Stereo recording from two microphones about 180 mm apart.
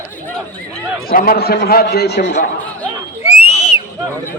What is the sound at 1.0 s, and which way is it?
A man's voice, 55° left (ahead or behind).